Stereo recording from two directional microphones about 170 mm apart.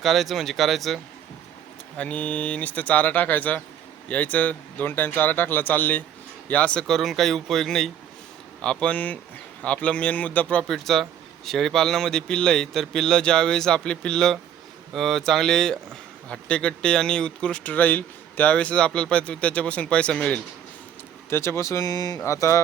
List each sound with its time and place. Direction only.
0.0 s a man's voice: centre (ahead or behind)
2.0 s a man's voice: 10° left (ahead or behind)